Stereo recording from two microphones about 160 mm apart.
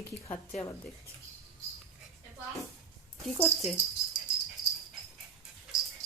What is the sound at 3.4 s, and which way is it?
Speech, centre (ahead or behind).